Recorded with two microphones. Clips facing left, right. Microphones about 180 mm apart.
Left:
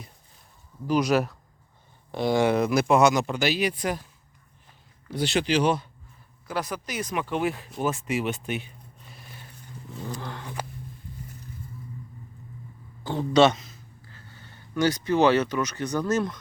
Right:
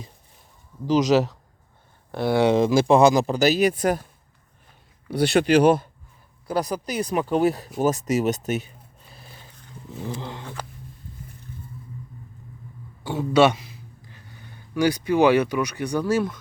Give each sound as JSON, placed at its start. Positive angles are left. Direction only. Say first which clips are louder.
{"t": 2.1, "sound": "speech", "louder": "right 2 dB", "side_deg": -5}
{"t": 2.5, "sound": "speech", "louder": "right 4 dB", "side_deg": -25}
{"t": 5.0, "sound": "speech", "louder": "right 6 dB", "side_deg": -60}
{"t": 6.5, "sound": "speech", "louder": "right 6 dB", "side_deg": -35}
{"t": 10.2, "sound": "a sound", "louder": "right 2 dB", "side_deg": -20}
{"t": 13.1, "sound": "speech", "louder": "right 1 dB", "side_deg": -10}